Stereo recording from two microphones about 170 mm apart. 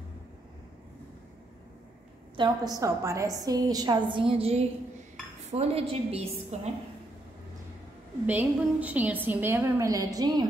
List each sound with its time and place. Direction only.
2.3 s a woman's voice: 25° right (ahead or behind)
8.3 s a woman's voice: 10° right (ahead or behind)